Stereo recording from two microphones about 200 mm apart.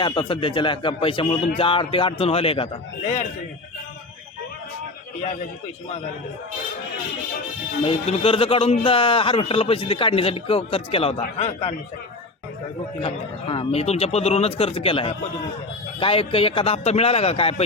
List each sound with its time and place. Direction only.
0.0 s a man's voice: 25° left (ahead or behind)
7.9 s a man's voice: 30° left (ahead or behind)
13.0 s a man's voice: 25° left (ahead or behind)